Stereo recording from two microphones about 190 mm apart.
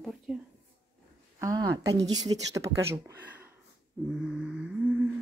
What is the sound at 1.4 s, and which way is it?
Speech, 15° right (ahead or behind).